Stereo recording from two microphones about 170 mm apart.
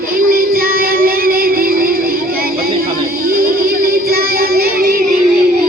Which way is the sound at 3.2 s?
60° right (ahead or behind).